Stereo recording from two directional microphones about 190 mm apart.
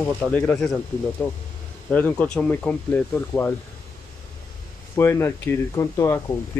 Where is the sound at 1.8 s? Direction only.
10° left (ahead or behind).